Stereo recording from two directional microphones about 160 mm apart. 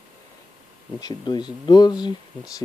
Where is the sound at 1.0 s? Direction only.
25° left (ahead or behind).